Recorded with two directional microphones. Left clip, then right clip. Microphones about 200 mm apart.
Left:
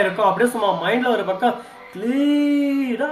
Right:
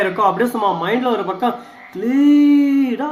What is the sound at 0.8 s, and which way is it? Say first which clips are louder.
Speech: right 1 dB; 10° right (ahead or behind).